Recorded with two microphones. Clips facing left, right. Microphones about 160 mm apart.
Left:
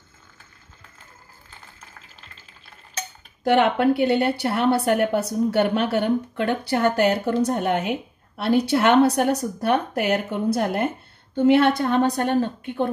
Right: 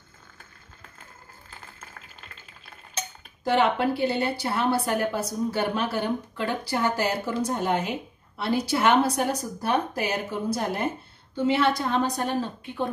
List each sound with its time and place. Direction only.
3.4 s a woman's voice: 65° left (ahead or behind)